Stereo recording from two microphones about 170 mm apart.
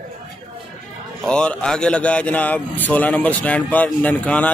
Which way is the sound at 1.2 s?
5° left (ahead or behind).